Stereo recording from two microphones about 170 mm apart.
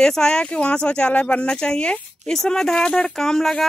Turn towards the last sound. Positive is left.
turn(degrees=0)  # may be behind; listen again after turning